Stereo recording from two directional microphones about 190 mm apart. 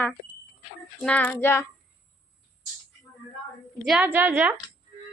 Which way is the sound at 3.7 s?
Centre (ahead or behind).